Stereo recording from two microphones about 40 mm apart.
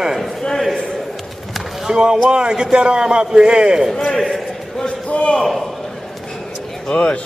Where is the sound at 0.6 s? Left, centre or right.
Centre.